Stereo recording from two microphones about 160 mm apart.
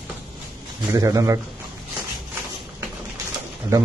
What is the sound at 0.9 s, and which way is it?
Speech, 20° right (ahead or behind).